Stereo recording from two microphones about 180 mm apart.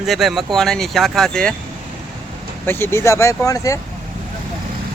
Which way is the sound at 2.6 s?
15° left (ahead or behind).